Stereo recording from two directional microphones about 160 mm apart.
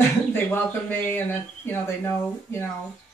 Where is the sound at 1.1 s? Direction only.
15° left (ahead or behind).